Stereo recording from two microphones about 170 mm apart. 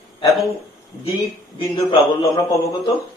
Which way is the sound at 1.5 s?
30° left (ahead or behind).